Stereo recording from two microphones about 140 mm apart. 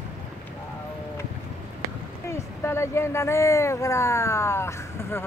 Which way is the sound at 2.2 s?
20° left (ahead or behind).